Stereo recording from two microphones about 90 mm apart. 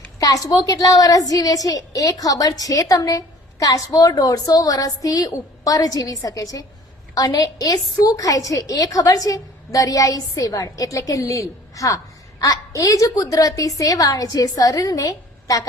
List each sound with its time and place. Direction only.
0.2 s a woman's voice: 40° left (ahead or behind)